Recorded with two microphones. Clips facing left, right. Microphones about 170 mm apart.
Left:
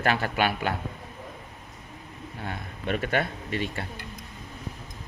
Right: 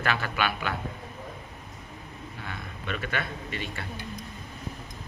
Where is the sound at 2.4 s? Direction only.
40° left (ahead or behind).